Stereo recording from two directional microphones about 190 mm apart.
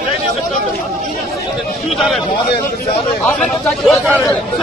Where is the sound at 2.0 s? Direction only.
Centre (ahead or behind).